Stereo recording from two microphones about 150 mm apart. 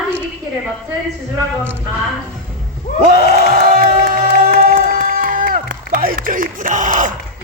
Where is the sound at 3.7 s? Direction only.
60° right (ahead or behind).